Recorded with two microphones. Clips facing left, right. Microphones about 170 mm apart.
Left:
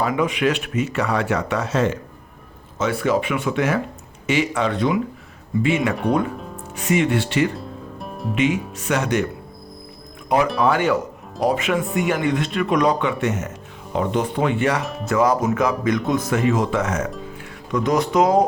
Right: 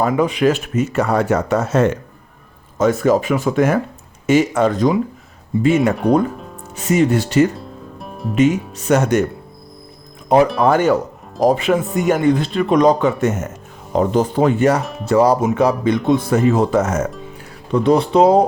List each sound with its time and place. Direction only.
0.0 s speech: 35° right (ahead or behind)
7.5 s music: centre (ahead or behind)
8.7 s speech: 40° right (ahead or behind)
10.2 s speech: 35° right (ahead or behind)
17.7 s speech: 30° right (ahead or behind)